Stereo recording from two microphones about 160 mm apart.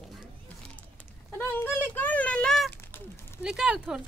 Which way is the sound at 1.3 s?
15° left (ahead or behind).